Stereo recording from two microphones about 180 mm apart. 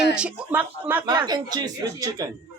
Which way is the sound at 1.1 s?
25° right (ahead or behind).